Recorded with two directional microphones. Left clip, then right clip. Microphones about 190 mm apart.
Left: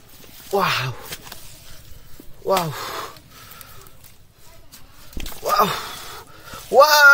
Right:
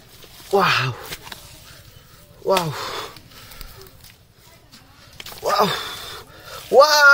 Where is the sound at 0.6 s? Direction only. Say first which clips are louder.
Right 3 dB; 15° right (ahead or behind).